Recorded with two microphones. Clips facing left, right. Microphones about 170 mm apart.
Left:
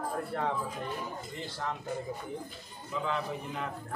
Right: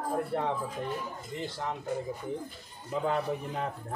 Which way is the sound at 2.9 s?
35° right (ahead or behind).